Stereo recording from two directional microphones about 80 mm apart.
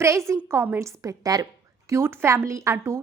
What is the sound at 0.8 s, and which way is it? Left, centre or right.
Speech, right.